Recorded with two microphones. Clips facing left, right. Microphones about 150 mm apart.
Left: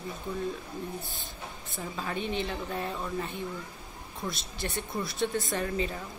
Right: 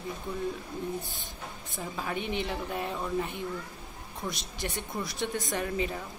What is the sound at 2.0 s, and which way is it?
Speech, 15° right (ahead or behind).